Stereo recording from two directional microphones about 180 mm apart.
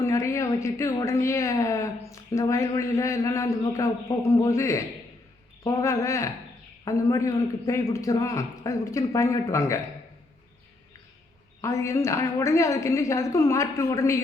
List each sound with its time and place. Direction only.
0.0 s speech: 15° left (ahead or behind)
11.6 s speech: 15° left (ahead or behind)